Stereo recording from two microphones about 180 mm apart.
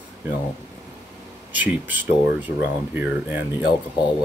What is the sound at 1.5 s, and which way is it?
Speech, 10° right (ahead or behind).